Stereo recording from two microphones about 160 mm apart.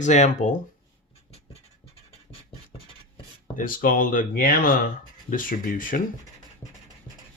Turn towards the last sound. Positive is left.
turn(degrees=60)  # may be behind; listen again after turning